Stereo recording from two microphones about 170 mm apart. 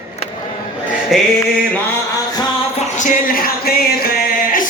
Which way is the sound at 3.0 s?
60° left (ahead or behind).